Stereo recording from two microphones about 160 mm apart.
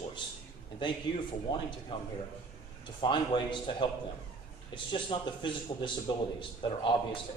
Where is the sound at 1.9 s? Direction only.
30° left (ahead or behind).